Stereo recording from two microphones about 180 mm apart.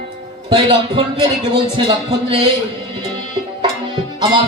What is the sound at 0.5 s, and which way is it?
Music, 30° right (ahead or behind).